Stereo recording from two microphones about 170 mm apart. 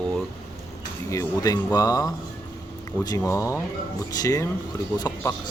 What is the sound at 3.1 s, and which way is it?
Speech, 20° left (ahead or behind).